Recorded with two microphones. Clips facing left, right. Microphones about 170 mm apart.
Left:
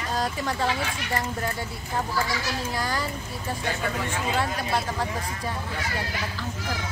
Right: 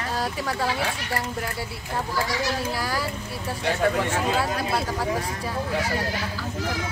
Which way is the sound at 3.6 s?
70° right (ahead or behind).